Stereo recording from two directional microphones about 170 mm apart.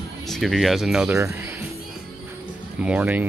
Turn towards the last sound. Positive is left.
turn(degrees=-10)  # may be behind; listen again after turning